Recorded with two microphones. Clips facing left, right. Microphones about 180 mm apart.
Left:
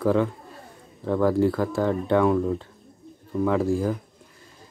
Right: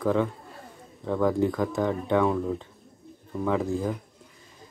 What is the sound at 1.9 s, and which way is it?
Speech, 10° right (ahead or behind).